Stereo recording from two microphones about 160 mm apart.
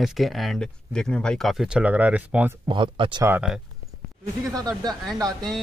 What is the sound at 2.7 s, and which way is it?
Speech, 30° right (ahead or behind).